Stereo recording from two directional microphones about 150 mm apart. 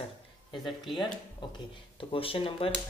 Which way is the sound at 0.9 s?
30° left (ahead or behind).